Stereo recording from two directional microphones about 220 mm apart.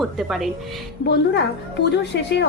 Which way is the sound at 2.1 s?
55° left (ahead or behind).